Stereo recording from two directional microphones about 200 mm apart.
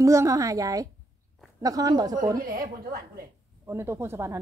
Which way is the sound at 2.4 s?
45° right (ahead or behind).